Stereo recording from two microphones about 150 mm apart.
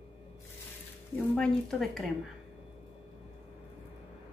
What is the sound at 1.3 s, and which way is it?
Speech, 5° left (ahead or behind).